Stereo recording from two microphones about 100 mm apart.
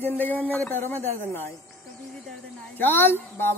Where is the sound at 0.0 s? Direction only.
20° left (ahead or behind).